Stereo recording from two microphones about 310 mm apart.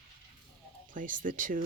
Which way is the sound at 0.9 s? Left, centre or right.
Right.